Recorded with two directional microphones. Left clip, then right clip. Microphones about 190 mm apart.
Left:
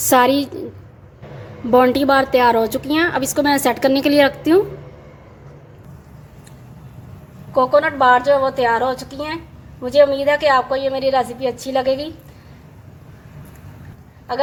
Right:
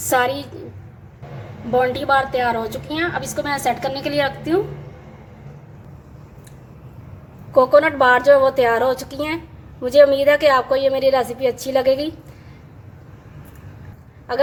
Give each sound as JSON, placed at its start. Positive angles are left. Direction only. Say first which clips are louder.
{"t": 0.1, "sound": "a woman's voice", "louder": "left 5 dB", "side_deg": 45}
{"t": 1.7, "sound": "a woman's voice", "louder": "left 4 dB", "side_deg": 50}
{"t": 7.5, "sound": "a woman's voice", "louder": "right 2 dB", "side_deg": -10}